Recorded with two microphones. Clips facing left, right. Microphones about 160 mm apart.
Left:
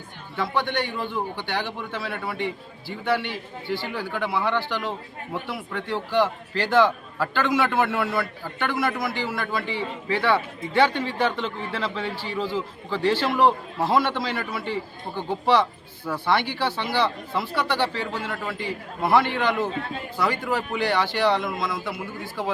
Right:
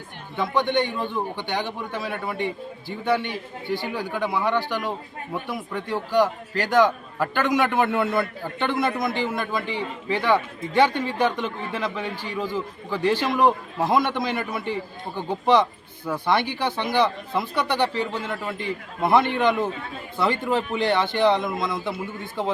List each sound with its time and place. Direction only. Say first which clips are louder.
0.3 s a man's voice: right 3 dB; 20° right (ahead or behind)